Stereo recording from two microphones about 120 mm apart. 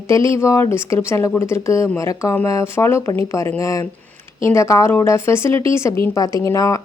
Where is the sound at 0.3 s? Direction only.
25° left (ahead or behind).